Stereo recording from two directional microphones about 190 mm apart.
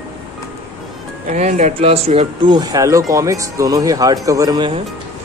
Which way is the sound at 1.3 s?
40° right (ahead or behind).